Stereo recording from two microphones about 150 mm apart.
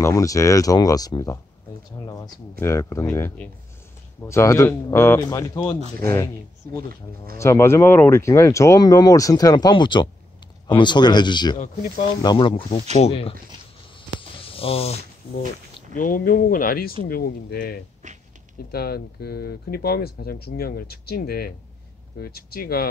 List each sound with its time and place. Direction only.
0.0 s speech: 20° left (ahead or behind)
2.0 s a sound: 25° left (ahead or behind)
2.6 s speech: 20° left (ahead or behind); by 13.3 s 40° left (ahead or behind)
14.3 s a sound: 40° left (ahead or behind)
15.9 s speech: 65° left (ahead or behind); by 17.7 s 85° left
18.0 s speech: 55° right (ahead or behind)
18.7 s speech: 90° left